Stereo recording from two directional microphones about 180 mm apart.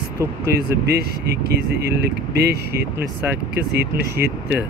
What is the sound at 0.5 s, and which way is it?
Speech, 65° right (ahead or behind).